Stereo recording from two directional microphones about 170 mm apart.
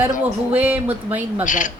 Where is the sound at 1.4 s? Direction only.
50° left (ahead or behind).